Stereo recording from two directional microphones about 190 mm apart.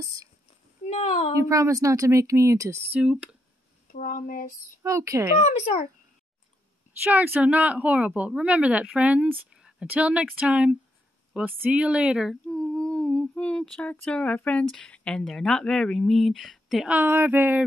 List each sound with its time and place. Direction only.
0.0 s a child's voice: 20° right (ahead or behind)
0.8 s a child's voice: 35° left (ahead or behind)
1.4 s a woman's voice: 15° right (ahead or behind)
3.8 s speech: 45° left (ahead or behind)
4.8 s a woman's voice: 15° right (ahead or behind)
5.4 s a child's voice: 35° left (ahead or behind)
7.0 s a woman's voice: 10° right (ahead or behind)